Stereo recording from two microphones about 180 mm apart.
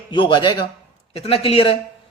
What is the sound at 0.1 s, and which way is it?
A man's voice, 25° left (ahead or behind).